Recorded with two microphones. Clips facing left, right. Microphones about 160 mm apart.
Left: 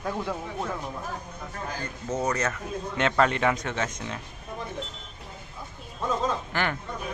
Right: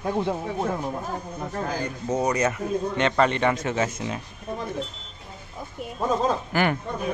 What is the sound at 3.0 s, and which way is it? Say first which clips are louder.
Speech: even; centre (ahead or behind).